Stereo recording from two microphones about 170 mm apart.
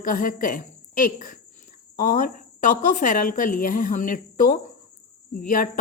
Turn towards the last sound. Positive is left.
turn(degrees=55)  # may be behind; listen again after turning